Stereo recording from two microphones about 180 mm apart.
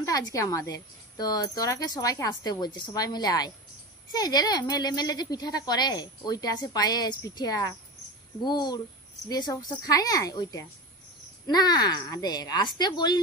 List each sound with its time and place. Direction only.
0.0 s speech: 20° left (ahead or behind)